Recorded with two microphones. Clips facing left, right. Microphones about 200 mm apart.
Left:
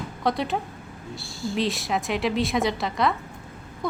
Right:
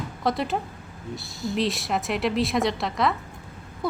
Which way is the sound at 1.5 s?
Centre (ahead or behind).